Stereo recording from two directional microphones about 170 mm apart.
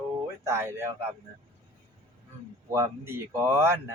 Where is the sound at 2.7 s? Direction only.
15° right (ahead or behind).